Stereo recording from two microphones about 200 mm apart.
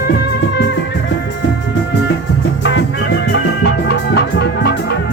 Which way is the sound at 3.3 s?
55° left (ahead or behind).